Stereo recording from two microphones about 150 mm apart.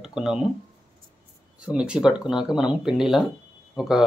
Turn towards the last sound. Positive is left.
turn(degrees=-5)  # may be behind; listen again after turning